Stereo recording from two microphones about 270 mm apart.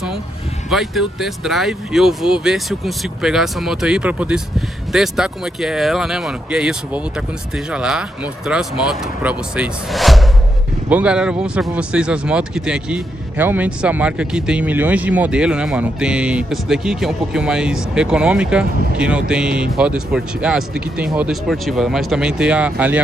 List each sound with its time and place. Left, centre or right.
0.7 s speech: centre